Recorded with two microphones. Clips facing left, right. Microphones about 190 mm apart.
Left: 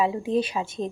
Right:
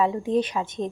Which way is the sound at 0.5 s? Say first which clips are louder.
Right 1 dB; 20° left (ahead or behind).